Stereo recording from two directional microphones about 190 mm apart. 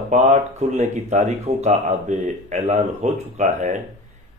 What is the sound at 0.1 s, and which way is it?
Speech, 40° right (ahead or behind).